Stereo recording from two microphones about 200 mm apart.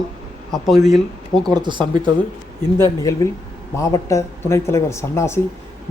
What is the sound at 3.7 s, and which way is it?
Speech, 15° left (ahead or behind).